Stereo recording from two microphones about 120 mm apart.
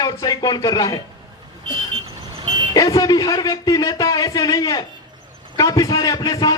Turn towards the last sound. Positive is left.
turn(degrees=30)  # may be behind; listen again after turning